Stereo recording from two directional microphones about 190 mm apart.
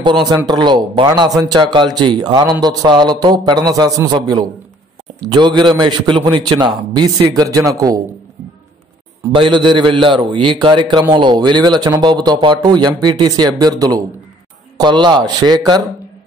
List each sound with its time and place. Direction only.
0.3 s a man's voice: 20° right (ahead or behind)
9.3 s a man's voice: 25° right (ahead or behind)